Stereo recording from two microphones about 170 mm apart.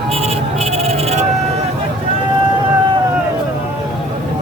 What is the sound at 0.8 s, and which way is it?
Sheep, 40° right (ahead or behind).